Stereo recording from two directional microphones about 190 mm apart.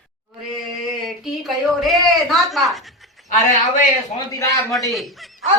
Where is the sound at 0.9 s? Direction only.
Centre (ahead or behind).